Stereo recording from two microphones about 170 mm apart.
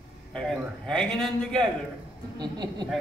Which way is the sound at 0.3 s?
5° left (ahead or behind).